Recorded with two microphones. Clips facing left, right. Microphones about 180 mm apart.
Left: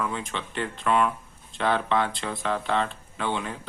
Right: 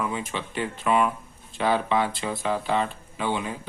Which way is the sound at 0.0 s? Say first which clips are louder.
Right 1 dB; 5° right (ahead or behind).